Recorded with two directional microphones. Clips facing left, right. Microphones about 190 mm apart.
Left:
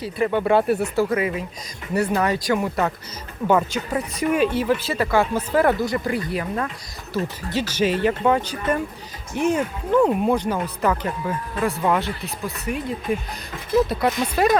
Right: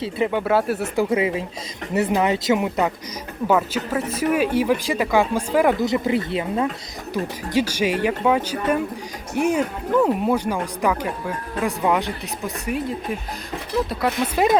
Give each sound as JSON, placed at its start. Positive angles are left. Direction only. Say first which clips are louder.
{"t": 0.3, "sound": "speech", "louder": "left 4 dB", "side_deg": -5}
{"t": 0.9, "sound": "speech", "louder": "right 1 dB", "side_deg": -25}
{"t": 3.4, "sound": "speech", "louder": "even", "side_deg": -5}
{"t": 13.1, "sound": "speech", "louder": "left 4 dB", "side_deg": 0}
{"t": 14.3, "sound": "speech", "louder": "right 1 dB", "side_deg": -20}